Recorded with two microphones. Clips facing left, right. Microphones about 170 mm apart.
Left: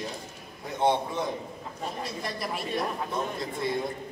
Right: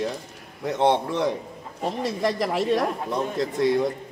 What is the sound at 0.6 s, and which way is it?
Speech, 80° right.